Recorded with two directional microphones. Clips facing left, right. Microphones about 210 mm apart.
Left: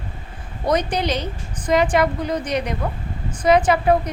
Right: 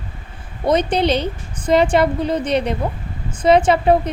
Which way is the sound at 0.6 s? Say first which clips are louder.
Right 4 dB; 25° right (ahead or behind).